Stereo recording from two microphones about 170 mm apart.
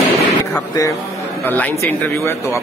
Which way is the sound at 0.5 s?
20° left (ahead or behind).